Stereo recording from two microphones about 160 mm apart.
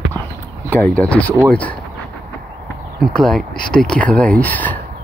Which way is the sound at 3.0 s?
5° left (ahead or behind).